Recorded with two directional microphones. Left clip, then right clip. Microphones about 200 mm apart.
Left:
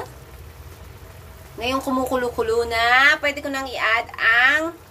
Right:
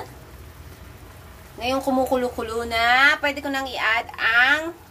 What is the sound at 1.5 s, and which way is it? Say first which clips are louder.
A woman's voice: right 1 dB; 5° left (ahead or behind).